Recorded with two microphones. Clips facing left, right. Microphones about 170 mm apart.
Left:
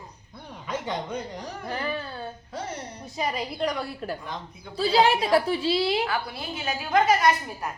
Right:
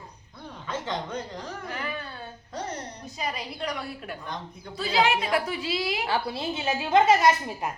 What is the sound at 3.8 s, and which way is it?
Speech, 35° left (ahead or behind).